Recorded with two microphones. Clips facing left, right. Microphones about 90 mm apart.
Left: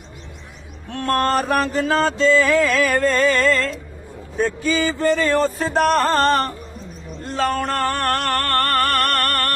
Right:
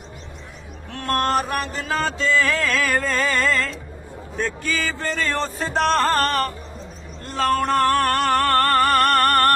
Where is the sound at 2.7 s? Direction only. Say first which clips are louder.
Left 4 dB; centre (ahead or behind).